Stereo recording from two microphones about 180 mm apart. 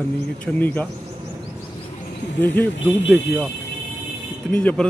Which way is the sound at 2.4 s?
10° left (ahead or behind).